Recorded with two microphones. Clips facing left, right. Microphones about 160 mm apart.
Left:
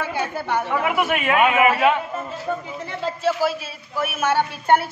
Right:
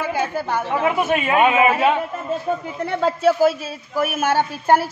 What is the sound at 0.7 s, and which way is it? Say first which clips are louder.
A man's voice: right 4 dB; 30° right (ahead or behind).